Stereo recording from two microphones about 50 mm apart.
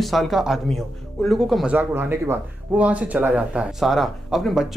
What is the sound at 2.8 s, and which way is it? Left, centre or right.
Speech, right.